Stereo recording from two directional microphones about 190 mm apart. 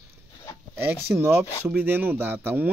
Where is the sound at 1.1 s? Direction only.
5° right (ahead or behind).